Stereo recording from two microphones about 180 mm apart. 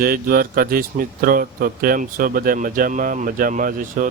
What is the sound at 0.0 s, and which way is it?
Speech, 55° right (ahead or behind).